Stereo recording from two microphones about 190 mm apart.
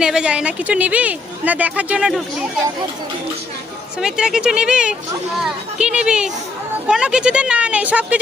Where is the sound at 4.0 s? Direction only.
5° right (ahead or behind).